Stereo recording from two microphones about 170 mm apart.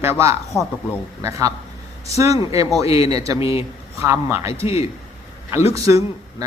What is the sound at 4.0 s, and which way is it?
Speech, 15° right (ahead or behind).